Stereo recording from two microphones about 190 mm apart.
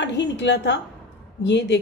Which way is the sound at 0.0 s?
70° left (ahead or behind).